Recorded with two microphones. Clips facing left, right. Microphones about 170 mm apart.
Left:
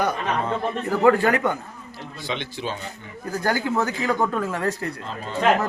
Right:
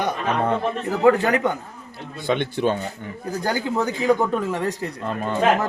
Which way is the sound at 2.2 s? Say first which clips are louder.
Right 9 dB; 55° right (ahead or behind).